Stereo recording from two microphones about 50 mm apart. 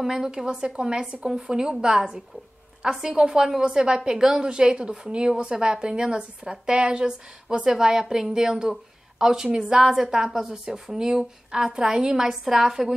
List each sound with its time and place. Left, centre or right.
0.0 s a woman's voice: centre